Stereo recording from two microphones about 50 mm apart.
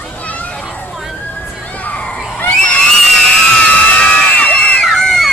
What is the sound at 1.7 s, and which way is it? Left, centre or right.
Crowd, left.